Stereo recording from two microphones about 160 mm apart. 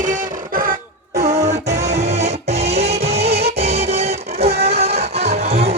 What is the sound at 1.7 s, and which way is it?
Music, 45° right (ahead or behind).